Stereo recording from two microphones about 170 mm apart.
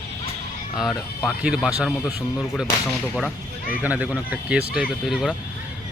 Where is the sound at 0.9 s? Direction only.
5° right (ahead or behind).